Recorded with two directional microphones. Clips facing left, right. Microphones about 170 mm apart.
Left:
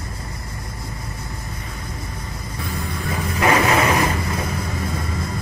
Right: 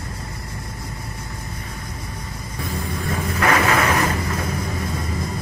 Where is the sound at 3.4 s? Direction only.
15° left (ahead or behind).